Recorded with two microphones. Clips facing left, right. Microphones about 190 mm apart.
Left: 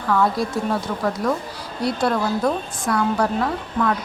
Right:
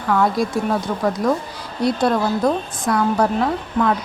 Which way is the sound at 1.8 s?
20° right (ahead or behind).